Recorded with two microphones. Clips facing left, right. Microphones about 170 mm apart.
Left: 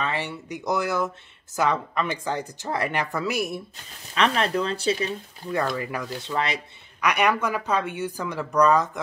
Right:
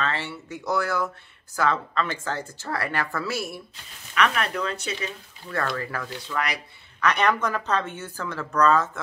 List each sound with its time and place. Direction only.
0.0 s speech: 15° left (ahead or behind)
4.1 s speech: 30° left (ahead or behind)
5.8 s speech: 15° left (ahead or behind)
7.0 s speech: 10° left (ahead or behind)